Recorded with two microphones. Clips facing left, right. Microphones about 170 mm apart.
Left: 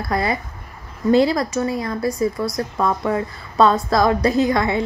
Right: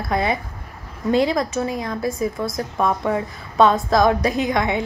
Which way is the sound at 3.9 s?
20° right (ahead or behind).